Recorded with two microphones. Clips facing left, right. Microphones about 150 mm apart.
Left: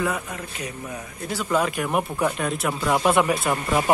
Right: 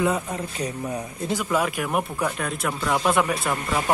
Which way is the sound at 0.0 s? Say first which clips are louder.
Right 3 dB; 25° right (ahead or behind).